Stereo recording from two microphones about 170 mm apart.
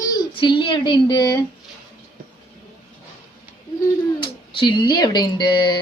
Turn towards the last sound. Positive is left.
turn(degrees=25)  # may be behind; listen again after turning